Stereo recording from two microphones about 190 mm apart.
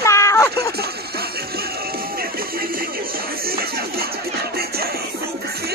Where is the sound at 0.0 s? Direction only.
15° left (ahead or behind).